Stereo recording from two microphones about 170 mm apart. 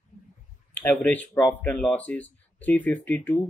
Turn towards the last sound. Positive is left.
turn(degrees=10)  # may be behind; listen again after turning